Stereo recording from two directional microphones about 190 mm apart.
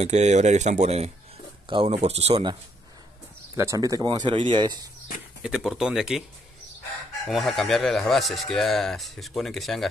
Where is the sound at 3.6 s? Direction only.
15° right (ahead or behind).